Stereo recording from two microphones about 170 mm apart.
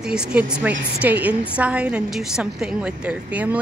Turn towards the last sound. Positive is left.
turn(degrees=-10)  # may be behind; listen again after turning